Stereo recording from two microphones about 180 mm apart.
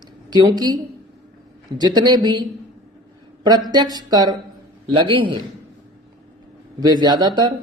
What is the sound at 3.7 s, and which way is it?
Speech, 25° right (ahead or behind).